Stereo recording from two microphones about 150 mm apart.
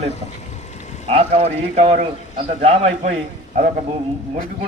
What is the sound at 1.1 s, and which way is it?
A man's voice, 40° right (ahead or behind).